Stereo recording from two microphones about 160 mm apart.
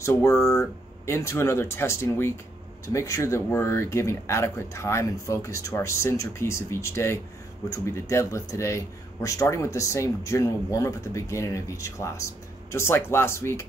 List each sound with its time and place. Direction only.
0.0 s speech: 20° left (ahead or behind)